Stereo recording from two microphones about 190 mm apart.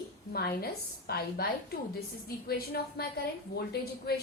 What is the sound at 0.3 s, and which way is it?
A woman's voice, 55° left (ahead or behind).